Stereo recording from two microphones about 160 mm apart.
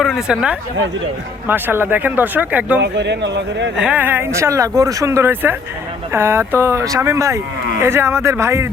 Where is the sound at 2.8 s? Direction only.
90° right.